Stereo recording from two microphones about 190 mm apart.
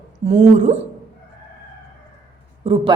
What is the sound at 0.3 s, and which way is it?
Speech, 35° right (ahead or behind).